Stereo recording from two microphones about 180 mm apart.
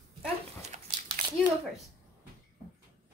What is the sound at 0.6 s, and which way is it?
Dog, 35° right (ahead or behind).